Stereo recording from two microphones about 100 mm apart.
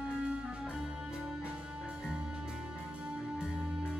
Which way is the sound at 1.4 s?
10° right (ahead or behind).